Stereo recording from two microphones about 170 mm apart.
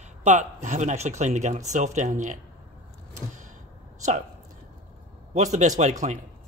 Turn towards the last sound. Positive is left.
turn(degrees=-45)  # may be behind; listen again after turning